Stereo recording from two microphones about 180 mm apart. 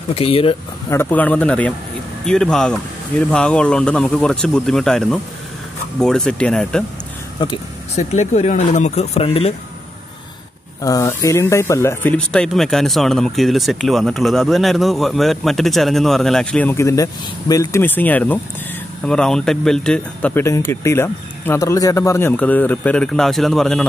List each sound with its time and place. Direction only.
0.1 s speech: 30° left (ahead or behind)
0.8 s speech: 10° left (ahead or behind)
7.3 s speech: 25° left (ahead or behind)
7.9 s speech: 40° left (ahead or behind)
10.8 s speech: 20° left (ahead or behind); by 23.9 s 5° left (ahead or behind)